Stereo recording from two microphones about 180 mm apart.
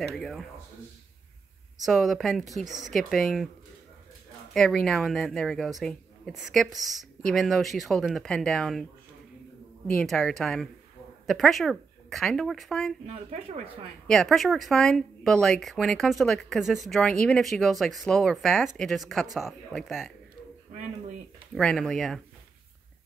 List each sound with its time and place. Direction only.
0.0 s speech: 5° left (ahead or behind)
1.9 s speech: centre (ahead or behind)
4.6 s speech: 5° left (ahead or behind)
9.9 s speech: 5° left (ahead or behind)
14.0 s speech: centre (ahead or behind)
21.5 s speech: 5° left (ahead or behind)